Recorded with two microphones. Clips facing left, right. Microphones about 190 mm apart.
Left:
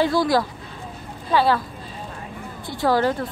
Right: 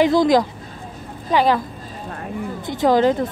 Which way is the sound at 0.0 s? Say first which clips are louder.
Right 5 dB; 20° right (ahead or behind).